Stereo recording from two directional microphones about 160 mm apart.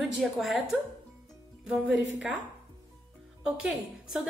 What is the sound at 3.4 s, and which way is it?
Speech, 5° right (ahead or behind).